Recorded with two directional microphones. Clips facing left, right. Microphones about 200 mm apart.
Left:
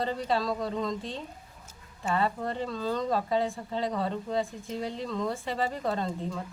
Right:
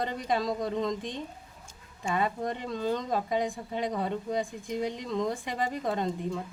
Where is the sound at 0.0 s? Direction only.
15° right (ahead or behind).